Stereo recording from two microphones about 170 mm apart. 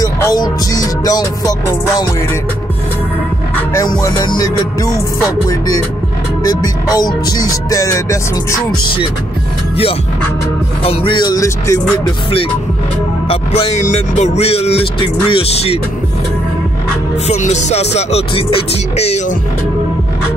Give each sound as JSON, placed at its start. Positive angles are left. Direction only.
{"t": 0.0, "sound": "music", "side_deg": 20}
{"t": 3.8, "sound": "music", "side_deg": 25}
{"t": 6.4, "sound": "music", "side_deg": 20}
{"t": 10.8, "sound": "music", "side_deg": 35}
{"t": 13.3, "sound": "speech", "side_deg": 35}
{"t": 17.3, "sound": "speech", "side_deg": 45}